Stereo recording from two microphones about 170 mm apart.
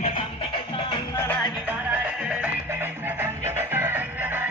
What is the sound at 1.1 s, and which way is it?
Music, 15° left (ahead or behind).